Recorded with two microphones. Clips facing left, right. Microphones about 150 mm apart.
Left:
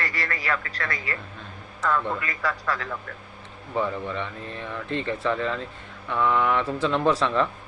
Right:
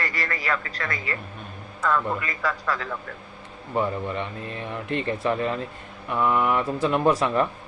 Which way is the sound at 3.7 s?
15° right (ahead or behind).